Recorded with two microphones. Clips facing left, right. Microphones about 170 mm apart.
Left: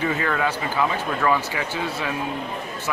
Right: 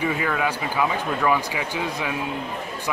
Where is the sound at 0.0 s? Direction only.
10° right (ahead or behind).